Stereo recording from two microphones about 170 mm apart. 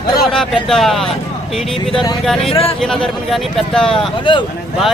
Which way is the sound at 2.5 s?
35° left (ahead or behind).